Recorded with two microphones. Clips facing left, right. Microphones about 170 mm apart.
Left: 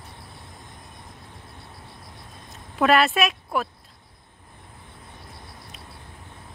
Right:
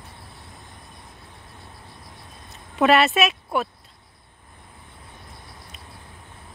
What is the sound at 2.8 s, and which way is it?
Speech, centre (ahead or behind).